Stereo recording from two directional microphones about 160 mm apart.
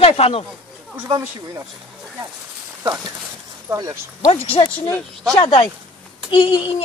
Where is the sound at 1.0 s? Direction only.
20° right (ahead or behind).